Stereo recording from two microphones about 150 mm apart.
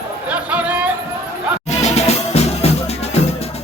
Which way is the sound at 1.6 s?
45° left (ahead or behind).